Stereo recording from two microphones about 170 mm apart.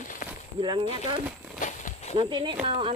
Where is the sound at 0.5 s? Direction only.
30° right (ahead or behind).